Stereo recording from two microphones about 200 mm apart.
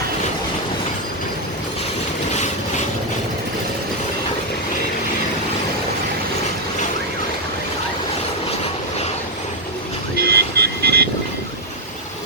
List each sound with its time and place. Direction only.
2.3 s vehicle: 35° left (ahead or behind)
10.2 s vehicle: 50° right (ahead or behind)